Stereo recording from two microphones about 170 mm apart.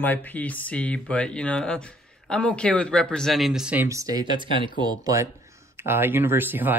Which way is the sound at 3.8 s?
20° right (ahead or behind).